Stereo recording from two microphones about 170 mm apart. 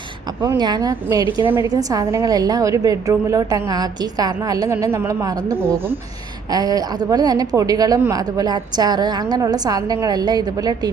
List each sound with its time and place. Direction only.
0.4 s a woman's voice: 25° right (ahead or behind)